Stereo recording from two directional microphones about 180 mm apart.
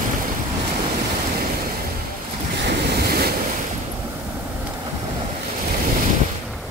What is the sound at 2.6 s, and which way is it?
Waves, 60° right (ahead or behind).